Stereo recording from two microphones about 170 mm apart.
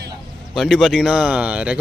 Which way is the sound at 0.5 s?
5° right (ahead or behind).